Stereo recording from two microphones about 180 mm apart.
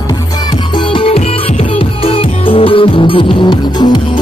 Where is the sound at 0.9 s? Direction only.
30° left (ahead or behind).